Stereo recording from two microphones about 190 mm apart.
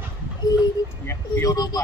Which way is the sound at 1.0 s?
15° left (ahead or behind).